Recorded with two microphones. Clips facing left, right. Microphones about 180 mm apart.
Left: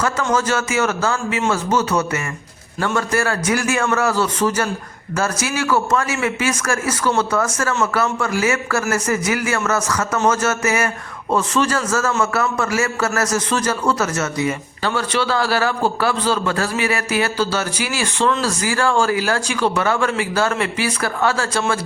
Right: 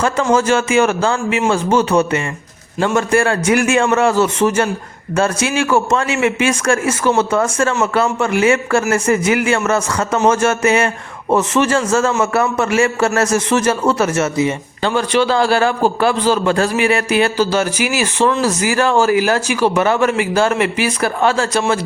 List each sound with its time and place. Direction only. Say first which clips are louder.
0.0 s a man's voice: right 5 dB; 25° right (ahead or behind)
17.3 s speech: right 5 dB; 10° right (ahead or behind)